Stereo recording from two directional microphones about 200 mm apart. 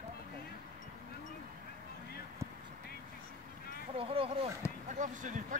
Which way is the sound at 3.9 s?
30° right (ahead or behind).